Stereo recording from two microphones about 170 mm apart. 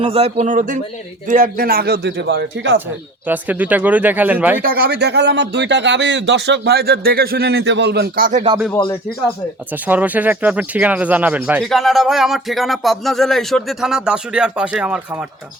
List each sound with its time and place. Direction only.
0.0 s speech: 35° right (ahead or behind)
0.4 s speech: 50° right (ahead or behind); by 2.7 s 85° right
3.2 s speech: 10° right (ahead or behind)
4.6 s speech: 65° right (ahead or behind)
9.8 s speech: 10° right (ahead or behind)
11.6 s speech: centre (ahead or behind)